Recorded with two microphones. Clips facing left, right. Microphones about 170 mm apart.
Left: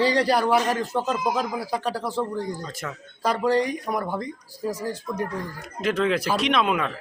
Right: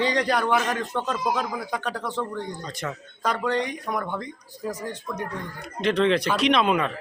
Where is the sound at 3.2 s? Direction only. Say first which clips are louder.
Left 3 dB; 35° left (ahead or behind).